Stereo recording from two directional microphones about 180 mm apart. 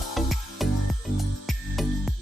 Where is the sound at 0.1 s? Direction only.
Centre (ahead or behind).